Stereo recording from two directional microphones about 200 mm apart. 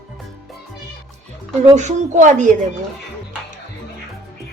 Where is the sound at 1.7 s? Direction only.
35° right (ahead or behind).